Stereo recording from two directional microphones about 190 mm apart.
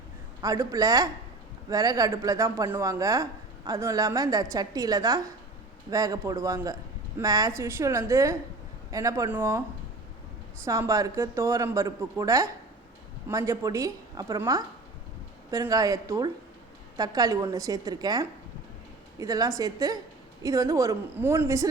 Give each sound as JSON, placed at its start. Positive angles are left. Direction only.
{"t": 0.4, "sound": "speech", "side_deg": -20}
{"t": 10.7, "sound": "a woman's voice", "side_deg": -15}